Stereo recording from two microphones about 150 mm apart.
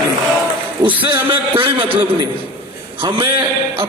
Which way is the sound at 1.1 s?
35° right (ahead or behind).